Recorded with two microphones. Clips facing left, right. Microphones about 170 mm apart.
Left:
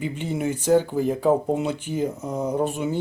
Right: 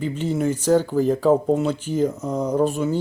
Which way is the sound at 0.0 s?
10° left (ahead or behind).